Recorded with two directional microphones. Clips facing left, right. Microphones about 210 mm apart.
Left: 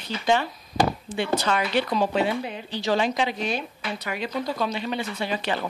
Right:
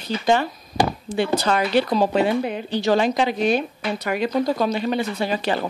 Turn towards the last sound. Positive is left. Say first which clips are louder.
# right 5 dB
turn(degrees=-40)  # may be behind; listen again after turning